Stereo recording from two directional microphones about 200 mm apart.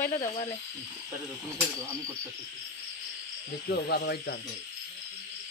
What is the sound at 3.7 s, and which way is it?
Speech, 50° left (ahead or behind).